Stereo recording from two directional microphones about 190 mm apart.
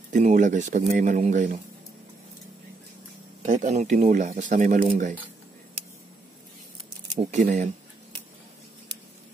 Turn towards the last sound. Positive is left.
turn(degrees=-40)  # may be behind; listen again after turning